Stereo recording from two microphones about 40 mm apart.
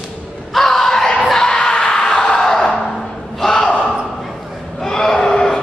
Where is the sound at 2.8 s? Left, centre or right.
Centre.